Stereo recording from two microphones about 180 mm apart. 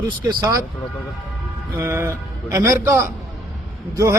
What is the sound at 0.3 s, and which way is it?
Speech, 25° right (ahead or behind).